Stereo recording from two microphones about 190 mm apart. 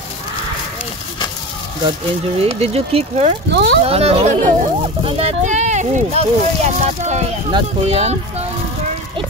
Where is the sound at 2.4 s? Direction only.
30° right (ahead or behind).